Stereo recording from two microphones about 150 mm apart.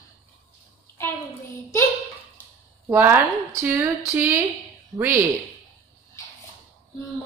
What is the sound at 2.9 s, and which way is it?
Speech, 20° right (ahead or behind).